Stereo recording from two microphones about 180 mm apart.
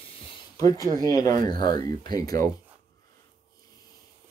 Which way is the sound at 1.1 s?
20° left (ahead or behind).